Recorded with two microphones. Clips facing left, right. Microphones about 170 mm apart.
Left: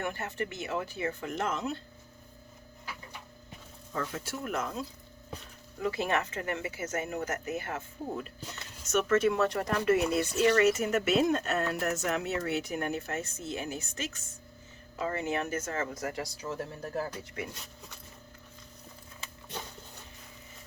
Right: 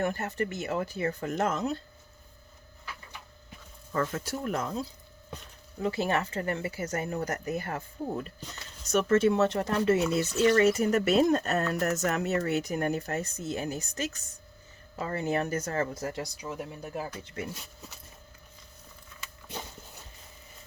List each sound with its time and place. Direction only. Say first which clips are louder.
0.0 s speech: right 5 dB; 40° right (ahead or behind)
3.9 s speech: right 5 dB; 45° right (ahead or behind)
5.8 s speech: right 2 dB; 30° right (ahead or behind)
8.9 s speech: right 3 dB; 30° right (ahead or behind); by 17.3 s 15° right (ahead or behind)